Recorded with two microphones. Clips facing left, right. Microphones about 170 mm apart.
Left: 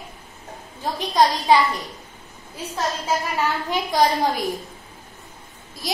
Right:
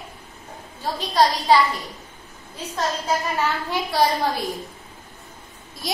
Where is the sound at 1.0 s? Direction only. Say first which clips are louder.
Left 1 dB; 15° left (ahead or behind).